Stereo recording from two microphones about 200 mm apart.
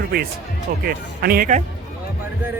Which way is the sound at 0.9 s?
50° right (ahead or behind).